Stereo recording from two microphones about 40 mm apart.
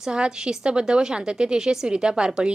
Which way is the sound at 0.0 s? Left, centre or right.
Centre.